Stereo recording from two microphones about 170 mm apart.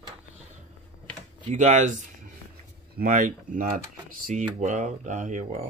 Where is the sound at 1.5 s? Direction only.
45° right (ahead or behind).